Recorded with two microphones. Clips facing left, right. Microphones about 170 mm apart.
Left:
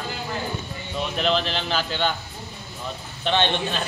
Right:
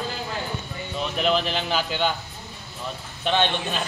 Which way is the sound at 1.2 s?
10° right (ahead or behind).